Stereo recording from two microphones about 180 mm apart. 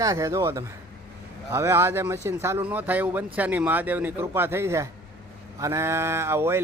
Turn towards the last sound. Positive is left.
turn(degrees=-15)  # may be behind; listen again after turning